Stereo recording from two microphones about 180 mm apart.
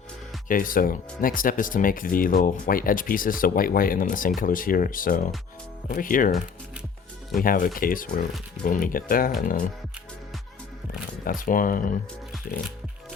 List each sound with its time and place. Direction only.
0.4 s speech: 50° left (ahead or behind)
7.4 s speech: 50° left (ahead or behind)
11.3 s speech: 50° left (ahead or behind)